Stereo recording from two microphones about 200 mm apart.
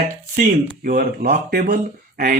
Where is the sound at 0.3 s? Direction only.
40° right (ahead or behind).